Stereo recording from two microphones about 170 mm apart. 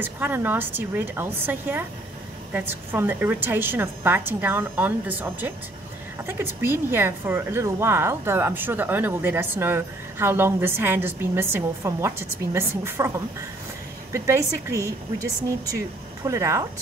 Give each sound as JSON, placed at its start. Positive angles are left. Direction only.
{"t": 0.0, "sound": "a woman's voice", "side_deg": -10}
{"t": 16.3, "sound": "a woman's voice", "side_deg": -20}